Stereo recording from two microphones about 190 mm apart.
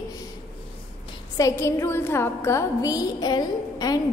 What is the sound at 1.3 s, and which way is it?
A woman's voice, 15° left (ahead or behind).